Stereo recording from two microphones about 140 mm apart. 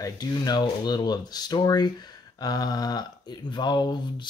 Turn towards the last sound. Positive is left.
turn(degrees=30)  # may be behind; listen again after turning